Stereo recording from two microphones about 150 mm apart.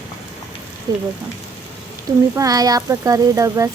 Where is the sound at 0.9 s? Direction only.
25° right (ahead or behind).